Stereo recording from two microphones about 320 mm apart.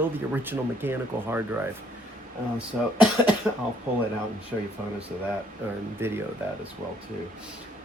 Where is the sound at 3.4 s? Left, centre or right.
Centre.